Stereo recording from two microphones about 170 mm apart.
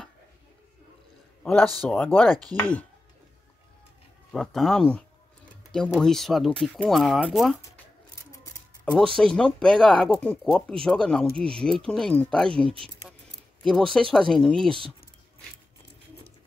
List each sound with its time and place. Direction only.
1.4 s a man's voice: 5° left (ahead or behind)
4.3 s speech: centre (ahead or behind)
8.9 s speech: 5° left (ahead or behind)
13.7 s speech: 5° left (ahead or behind)